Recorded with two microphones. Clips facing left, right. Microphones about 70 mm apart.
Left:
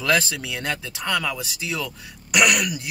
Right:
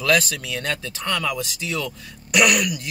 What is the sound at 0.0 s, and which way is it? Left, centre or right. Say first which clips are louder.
Speech: right 1 dB; centre.